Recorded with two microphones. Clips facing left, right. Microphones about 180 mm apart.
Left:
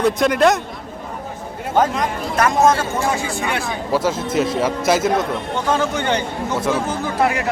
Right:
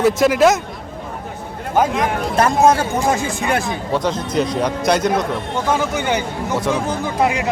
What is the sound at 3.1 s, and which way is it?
Speech, 45° right (ahead or behind).